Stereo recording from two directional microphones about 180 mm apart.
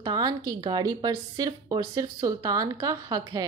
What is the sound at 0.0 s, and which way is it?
A woman's voice, 20° right (ahead or behind).